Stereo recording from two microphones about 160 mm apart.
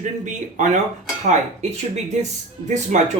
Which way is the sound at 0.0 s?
50° right (ahead or behind).